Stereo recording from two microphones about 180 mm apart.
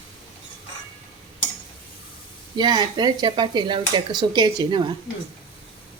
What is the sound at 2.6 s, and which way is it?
Speech, 25° right (ahead or behind).